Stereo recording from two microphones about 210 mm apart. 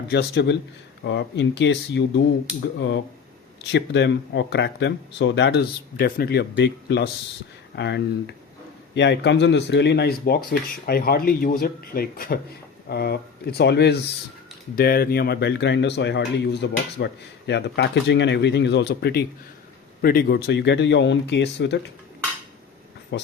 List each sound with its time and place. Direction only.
0.1 s speech: 55° left (ahead or behind)
3.7 s speech: 55° left (ahead or behind)
23.1 s speech: 55° left (ahead or behind)